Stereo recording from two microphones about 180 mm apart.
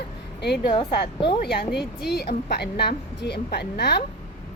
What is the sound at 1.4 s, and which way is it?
Speech, 60° left (ahead or behind).